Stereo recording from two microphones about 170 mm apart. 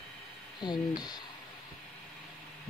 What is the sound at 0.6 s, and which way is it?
Speech, 25° left (ahead or behind).